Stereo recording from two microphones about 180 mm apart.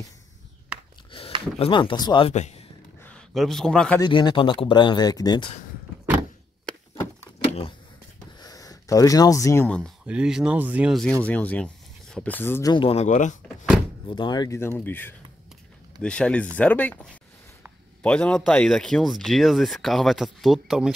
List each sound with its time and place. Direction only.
1.6 s speech: 25° left (ahead or behind)
2.3 s a man's voice: 40° left (ahead or behind)
3.0 s a man's voice: 5° left (ahead or behind)
4.0 s speech: 25° left (ahead or behind)
8.4 s a sound: 20° left (ahead or behind)
9.7 s speech: 5° left (ahead or behind)
12.7 s speech: 35° left (ahead or behind)
14.0 s speech: 25° left (ahead or behind); by 20.9 s centre (ahead or behind)